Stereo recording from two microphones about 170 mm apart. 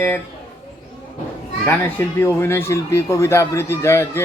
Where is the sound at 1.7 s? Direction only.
10° left (ahead or behind).